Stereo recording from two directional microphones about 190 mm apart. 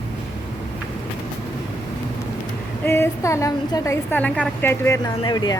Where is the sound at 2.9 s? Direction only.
15° left (ahead or behind).